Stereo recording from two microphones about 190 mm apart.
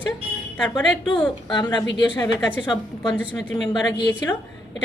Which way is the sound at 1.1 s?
25° left (ahead or behind).